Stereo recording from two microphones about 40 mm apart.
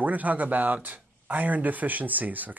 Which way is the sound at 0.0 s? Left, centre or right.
Right.